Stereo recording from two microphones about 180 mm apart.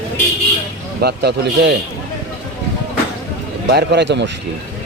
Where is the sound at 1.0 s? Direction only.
65° right (ahead or behind).